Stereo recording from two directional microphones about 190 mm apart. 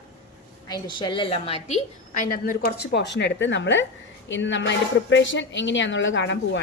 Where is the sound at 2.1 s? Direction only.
45° left (ahead or behind); by 6.6 s 70° left (ahead or behind).